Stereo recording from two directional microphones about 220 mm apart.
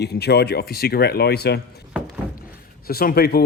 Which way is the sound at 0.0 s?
50° left (ahead or behind).